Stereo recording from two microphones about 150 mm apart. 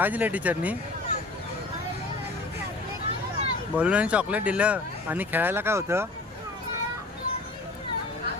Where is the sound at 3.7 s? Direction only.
10° right (ahead or behind).